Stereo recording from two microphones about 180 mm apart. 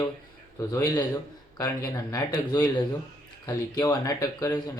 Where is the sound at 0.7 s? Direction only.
20° left (ahead or behind).